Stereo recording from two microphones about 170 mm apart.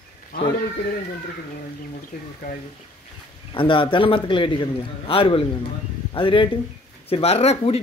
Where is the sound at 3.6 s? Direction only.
30° left (ahead or behind).